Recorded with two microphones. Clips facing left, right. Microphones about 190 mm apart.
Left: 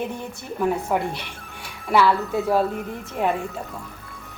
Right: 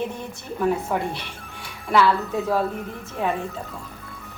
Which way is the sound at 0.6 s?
10° left (ahead or behind).